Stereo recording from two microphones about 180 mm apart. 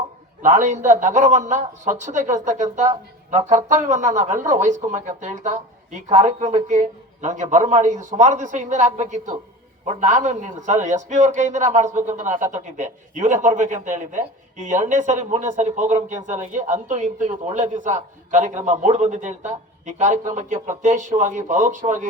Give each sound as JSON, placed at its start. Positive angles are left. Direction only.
{"t": 0.4, "sound": "a man's voice", "side_deg": -40}